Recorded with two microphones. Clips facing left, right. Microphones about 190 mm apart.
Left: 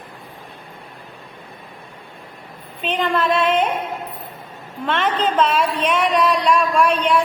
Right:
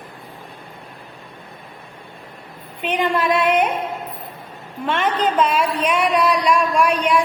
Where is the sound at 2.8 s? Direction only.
15° right (ahead or behind).